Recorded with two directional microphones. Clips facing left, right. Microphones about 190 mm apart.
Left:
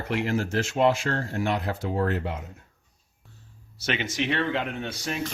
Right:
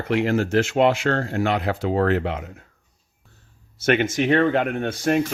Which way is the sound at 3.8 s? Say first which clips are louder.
Right 9 dB; 50° right (ahead or behind).